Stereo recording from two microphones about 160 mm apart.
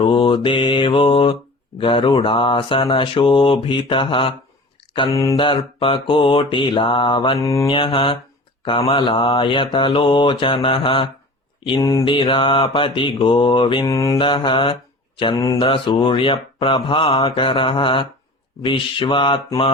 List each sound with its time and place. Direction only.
0.0 s mantra: 30° left (ahead or behind)
5.1 s mantra: 20° left (ahead or behind)
7.3 s mantra: 20° left (ahead or behind)
7.7 s mantra: 35° left (ahead or behind)
14.2 s mantra: 30° left (ahead or behind)